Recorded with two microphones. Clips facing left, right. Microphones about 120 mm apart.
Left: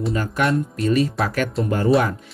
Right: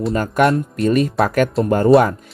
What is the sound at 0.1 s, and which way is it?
Speech, 50° right (ahead or behind).